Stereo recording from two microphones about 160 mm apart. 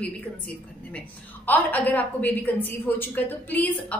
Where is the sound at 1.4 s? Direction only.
10° left (ahead or behind).